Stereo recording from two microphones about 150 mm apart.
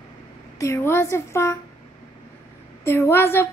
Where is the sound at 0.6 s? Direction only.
15° left (ahead or behind).